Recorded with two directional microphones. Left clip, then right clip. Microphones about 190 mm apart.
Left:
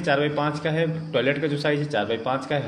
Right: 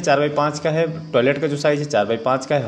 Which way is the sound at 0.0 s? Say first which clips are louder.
Right 5 dB; 35° right (ahead or behind).